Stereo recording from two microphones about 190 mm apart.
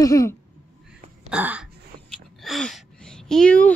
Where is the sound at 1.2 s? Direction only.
5° right (ahead or behind).